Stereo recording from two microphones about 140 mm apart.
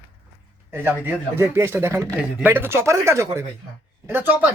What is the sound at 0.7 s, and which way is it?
Speech, 15° right (ahead or behind).